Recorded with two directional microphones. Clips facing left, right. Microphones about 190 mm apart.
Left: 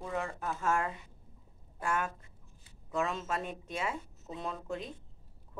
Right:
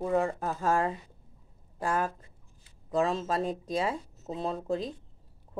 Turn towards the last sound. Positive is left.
turn(degrees=-35)  # may be behind; listen again after turning